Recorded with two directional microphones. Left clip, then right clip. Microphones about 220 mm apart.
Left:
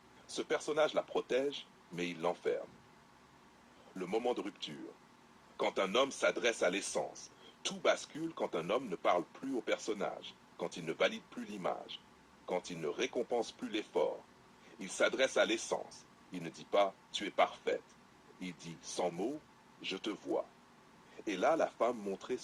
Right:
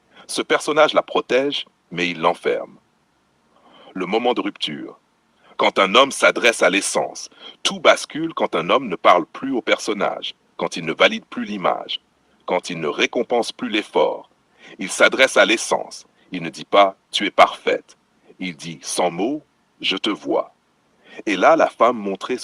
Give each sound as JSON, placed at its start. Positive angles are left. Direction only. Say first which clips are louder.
{"t": 0.3, "sound": "speech", "louder": "right 17 dB", "side_deg": -40}
{"t": 3.9, "sound": "speech", "louder": "right 16 dB", "side_deg": -40}